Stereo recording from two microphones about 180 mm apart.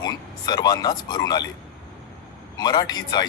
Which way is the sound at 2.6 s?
20° left (ahead or behind).